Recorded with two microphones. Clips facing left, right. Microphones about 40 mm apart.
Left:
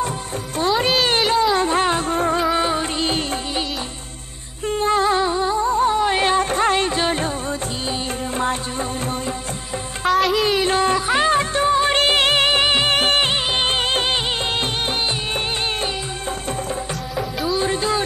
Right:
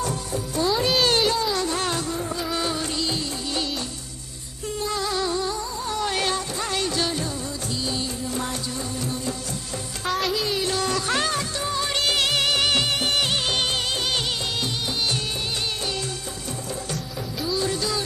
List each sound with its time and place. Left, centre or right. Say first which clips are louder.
0.6 s music: left 4 dB; left
1.0 s music: left 4 dB; left
2.1 s music: left 9 dB; left
2.4 s music of bollywood: left 7 dB; left
4.6 s music: left 9 dB; left
10.0 s music: left 8 dB; centre
10.5 s music: left 7 dB; left
11.1 s music of bollywood: left 7 dB; left
12.9 s music of bollywood: left 6 dB; left
17.6 s music: left 5 dB; left